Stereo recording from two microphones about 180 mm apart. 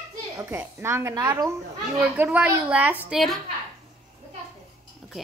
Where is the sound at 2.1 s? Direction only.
10° right (ahead or behind).